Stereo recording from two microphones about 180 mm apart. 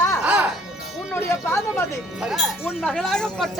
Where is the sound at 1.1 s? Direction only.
10° left (ahead or behind).